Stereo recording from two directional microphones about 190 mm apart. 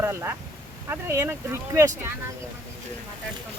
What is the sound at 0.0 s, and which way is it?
Speech, 15° right (ahead or behind).